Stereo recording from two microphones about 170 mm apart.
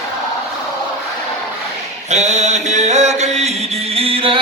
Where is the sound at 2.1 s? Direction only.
40° right (ahead or behind).